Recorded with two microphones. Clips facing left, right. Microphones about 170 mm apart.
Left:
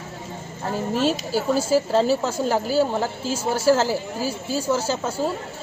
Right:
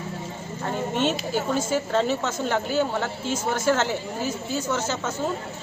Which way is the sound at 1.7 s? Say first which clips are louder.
Left 5 dB; 35° left (ahead or behind).